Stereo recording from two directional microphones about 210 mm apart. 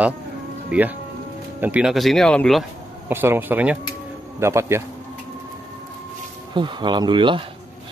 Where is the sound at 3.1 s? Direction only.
10° right (ahead or behind).